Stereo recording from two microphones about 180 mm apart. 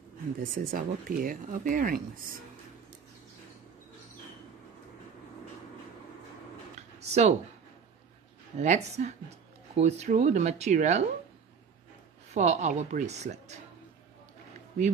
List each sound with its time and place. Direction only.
0.4 s speech: 50° right (ahead or behind)
7.0 s a sound: 40° right (ahead or behind)
8.5 s speech: 40° right (ahead or behind)
12.4 s speech: 40° right (ahead or behind)